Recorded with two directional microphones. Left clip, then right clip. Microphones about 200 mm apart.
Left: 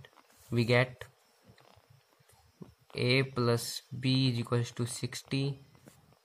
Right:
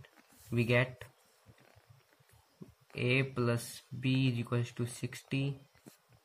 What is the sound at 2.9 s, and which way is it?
Speech, 40° left (ahead or behind).